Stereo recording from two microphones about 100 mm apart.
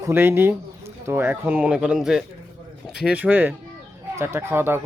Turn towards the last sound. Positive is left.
turn(degrees=-25)  # may be behind; listen again after turning